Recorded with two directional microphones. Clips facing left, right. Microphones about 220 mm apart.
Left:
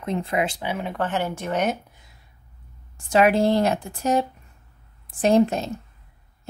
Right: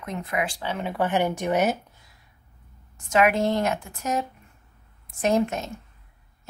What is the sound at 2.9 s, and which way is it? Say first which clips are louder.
A woman's voice: left 3 dB; 30° left (ahead or behind).